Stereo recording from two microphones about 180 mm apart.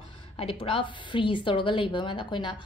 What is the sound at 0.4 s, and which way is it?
A woman's voice, 30° left (ahead or behind).